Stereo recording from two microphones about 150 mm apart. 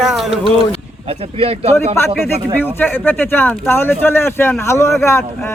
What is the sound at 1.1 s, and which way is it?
Speech, 40° right (ahead or behind).